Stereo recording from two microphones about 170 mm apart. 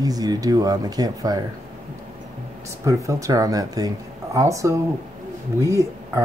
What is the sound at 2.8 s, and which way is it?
Speech, 20° right (ahead or behind).